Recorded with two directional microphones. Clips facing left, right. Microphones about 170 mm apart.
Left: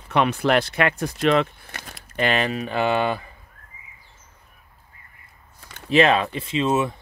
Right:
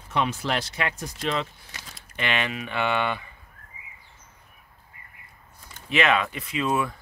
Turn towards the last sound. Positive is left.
turn(degrees=25)  # may be behind; listen again after turning